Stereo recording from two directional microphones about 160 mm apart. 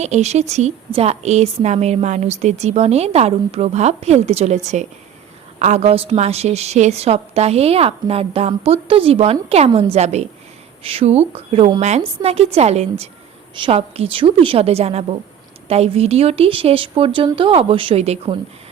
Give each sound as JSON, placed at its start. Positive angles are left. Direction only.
{"t": 0.0, "sound": "a woman's voice", "side_deg": -45}